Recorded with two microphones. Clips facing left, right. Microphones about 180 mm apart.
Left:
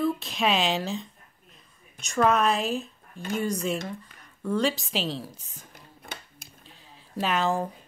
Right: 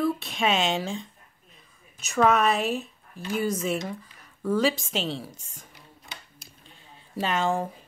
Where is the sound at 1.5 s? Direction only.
5° right (ahead or behind).